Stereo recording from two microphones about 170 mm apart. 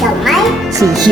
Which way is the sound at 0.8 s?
20° right (ahead or behind).